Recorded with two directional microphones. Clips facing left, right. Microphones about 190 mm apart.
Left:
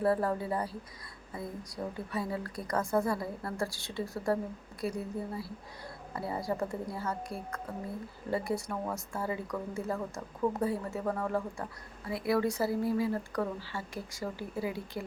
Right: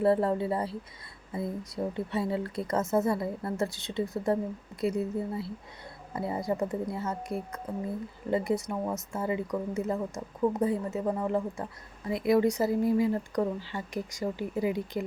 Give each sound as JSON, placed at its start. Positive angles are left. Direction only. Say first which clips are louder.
{"t": 0.0, "sound": "speech", "louder": "right 4 dB", "side_deg": -25}